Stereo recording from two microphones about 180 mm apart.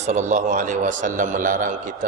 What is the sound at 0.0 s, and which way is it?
A man's voice, 40° right (ahead or behind).